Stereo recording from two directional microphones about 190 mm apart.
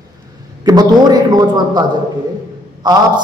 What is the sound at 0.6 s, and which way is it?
A man's voice, 20° right (ahead or behind).